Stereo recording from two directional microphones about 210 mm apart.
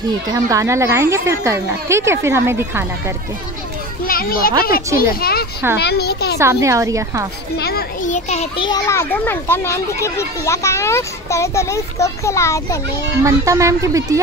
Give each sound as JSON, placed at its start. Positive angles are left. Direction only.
{"t": 0.3, "sound": "a woman's voice", "side_deg": -15}
{"t": 4.0, "sound": "a child's voice", "side_deg": 45}
{"t": 6.3, "sound": "a woman's voice", "side_deg": -15}
{"t": 7.5, "sound": "a child's voice", "side_deg": 50}
{"t": 13.2, "sound": "a woman's voice", "side_deg": -15}